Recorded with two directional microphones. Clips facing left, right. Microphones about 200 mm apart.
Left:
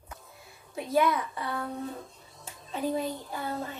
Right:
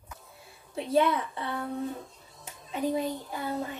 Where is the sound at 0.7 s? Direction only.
30° right (ahead or behind).